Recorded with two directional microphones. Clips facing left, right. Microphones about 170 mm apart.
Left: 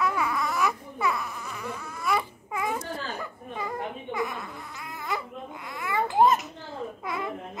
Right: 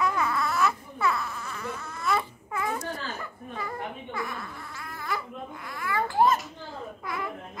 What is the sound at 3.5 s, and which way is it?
Baby cry, 20° left (ahead or behind).